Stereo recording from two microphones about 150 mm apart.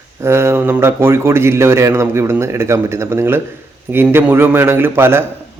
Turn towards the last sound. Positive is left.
turn(degrees=-15)  # may be behind; listen again after turning